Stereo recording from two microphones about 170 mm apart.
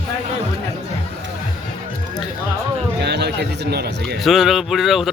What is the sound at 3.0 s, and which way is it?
A man's voice, 85° right.